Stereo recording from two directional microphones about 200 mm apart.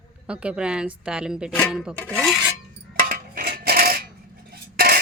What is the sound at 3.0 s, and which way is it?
Coin, 45° right (ahead or behind).